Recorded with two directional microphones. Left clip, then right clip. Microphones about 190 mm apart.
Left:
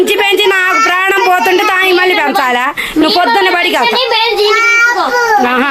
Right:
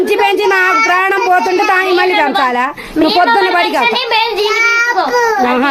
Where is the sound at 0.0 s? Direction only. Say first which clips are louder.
Left 2 dB; centre (ahead or behind).